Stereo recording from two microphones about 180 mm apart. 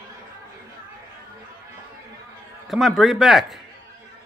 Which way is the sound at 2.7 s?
Centre (ahead or behind).